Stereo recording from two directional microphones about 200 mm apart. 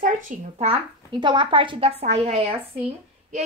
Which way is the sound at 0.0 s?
35° right (ahead or behind).